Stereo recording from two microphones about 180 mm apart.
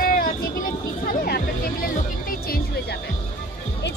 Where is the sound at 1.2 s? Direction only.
55° left (ahead or behind).